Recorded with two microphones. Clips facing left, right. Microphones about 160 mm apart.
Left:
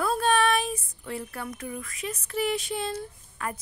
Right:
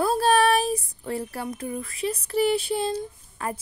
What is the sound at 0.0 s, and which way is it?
A woman's voice, 35° right (ahead or behind).